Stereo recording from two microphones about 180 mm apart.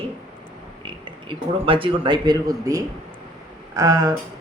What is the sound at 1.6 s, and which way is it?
Speech, 30° right (ahead or behind).